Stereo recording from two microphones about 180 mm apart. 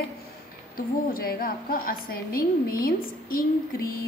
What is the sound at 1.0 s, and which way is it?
A woman's voice, 55° left (ahead or behind).